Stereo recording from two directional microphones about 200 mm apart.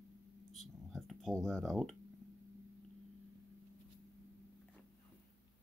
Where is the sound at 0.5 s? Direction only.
Centre (ahead or behind).